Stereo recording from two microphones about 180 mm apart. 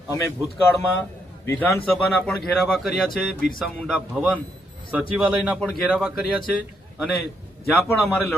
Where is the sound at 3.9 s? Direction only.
10° right (ahead or behind).